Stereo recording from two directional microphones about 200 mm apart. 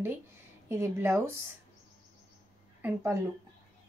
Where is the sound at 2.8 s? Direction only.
10° right (ahead or behind).